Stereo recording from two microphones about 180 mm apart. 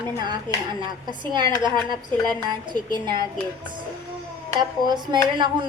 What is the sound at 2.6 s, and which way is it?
Speech, 25° right (ahead or behind).